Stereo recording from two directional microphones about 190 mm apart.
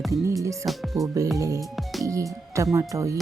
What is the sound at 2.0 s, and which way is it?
Speech, 15° right (ahead or behind).